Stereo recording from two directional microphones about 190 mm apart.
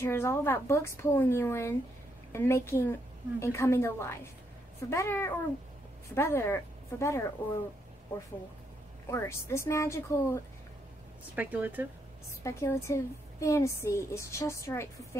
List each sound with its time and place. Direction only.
0.0 s a woman's voice: 15° left (ahead or behind)
9.0 s a woman's voice: 15° left (ahead or behind)
11.3 s speech: 10° right (ahead or behind)
12.3 s a woman's voice: 15° left (ahead or behind)